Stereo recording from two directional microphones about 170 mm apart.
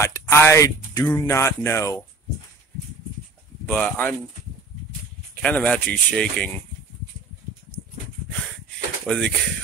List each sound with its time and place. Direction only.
0.0 s speech: 15° left (ahead or behind)
3.6 s speech: 10° left (ahead or behind)
5.3 s speech: 10° left (ahead or behind)
9.0 s speech: 5° left (ahead or behind)